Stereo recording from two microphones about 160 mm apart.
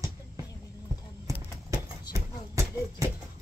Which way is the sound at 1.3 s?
15° right (ahead or behind).